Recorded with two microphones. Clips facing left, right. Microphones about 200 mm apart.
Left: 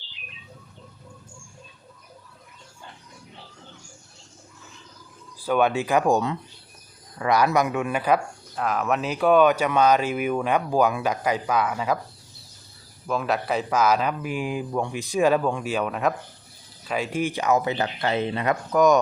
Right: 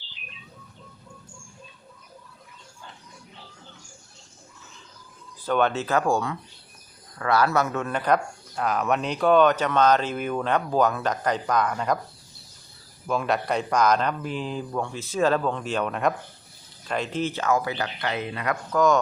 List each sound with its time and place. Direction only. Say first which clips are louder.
5.4 s speech: left 2 dB; 10° left (ahead or behind)
13.1 s speech: even; centre (ahead or behind); by 18.9 s 20° left (ahead or behind)